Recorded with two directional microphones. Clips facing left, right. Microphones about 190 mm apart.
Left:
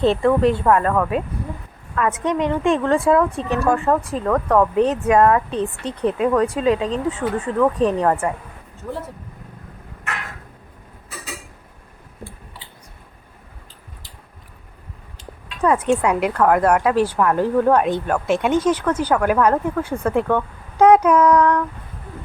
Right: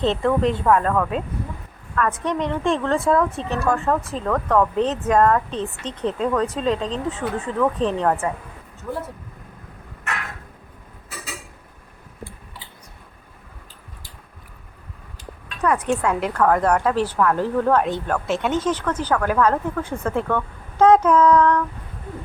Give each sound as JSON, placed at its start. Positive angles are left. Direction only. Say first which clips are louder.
{"t": 0.2, "sound": "speech", "louder": "left 3 dB", "side_deg": 0}
{"t": 2.0, "sound": "a woman's voice", "louder": "left 2 dB", "side_deg": 20}
{"t": 15.6, "sound": "a woman's voice", "louder": "left 3 dB", "side_deg": 20}